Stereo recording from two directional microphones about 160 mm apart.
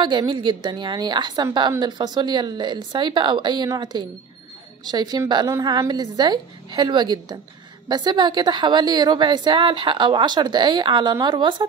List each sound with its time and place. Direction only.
0.0 s a woman's voice: 30° right (ahead or behind)